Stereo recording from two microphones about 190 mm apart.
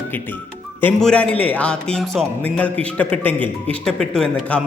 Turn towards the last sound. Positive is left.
turn(degrees=5)  # may be behind; listen again after turning